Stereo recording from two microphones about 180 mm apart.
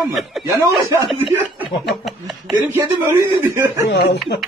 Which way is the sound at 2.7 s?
15° right (ahead or behind).